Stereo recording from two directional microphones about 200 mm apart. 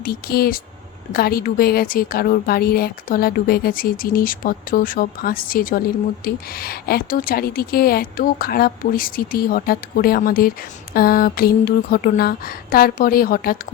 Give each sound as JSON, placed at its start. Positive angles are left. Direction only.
{"t": 0.0, "sound": "a woman's voice", "side_deg": 50}